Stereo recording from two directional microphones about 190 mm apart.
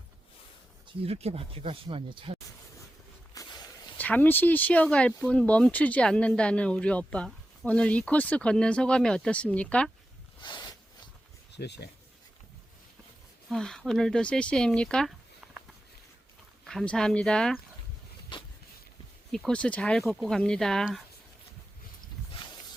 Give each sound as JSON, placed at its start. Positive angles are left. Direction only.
{"t": 1.0, "sound": "speech", "side_deg": -30}
{"t": 3.3, "sound": "walk", "side_deg": 20}
{"t": 3.9, "sound": "speech", "side_deg": 10}
{"t": 10.4, "sound": "a sound", "side_deg": 25}
{"t": 11.5, "sound": "speech", "side_deg": 60}
{"t": 13.5, "sound": "speech", "side_deg": 0}
{"t": 16.6, "sound": "speech", "side_deg": 5}
{"t": 18.3, "sound": "a sound", "side_deg": 25}
{"t": 19.3, "sound": "speech", "side_deg": 5}